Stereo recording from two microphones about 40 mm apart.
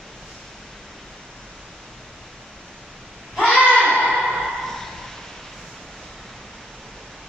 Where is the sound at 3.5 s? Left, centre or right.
Right.